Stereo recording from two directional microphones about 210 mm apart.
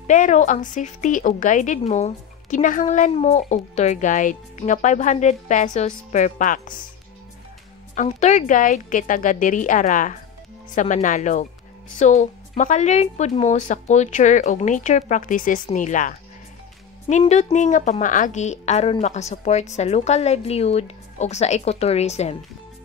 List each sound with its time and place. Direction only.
0.0 s speech: 35° left (ahead or behind)
7.9 s speech: 35° left (ahead or behind)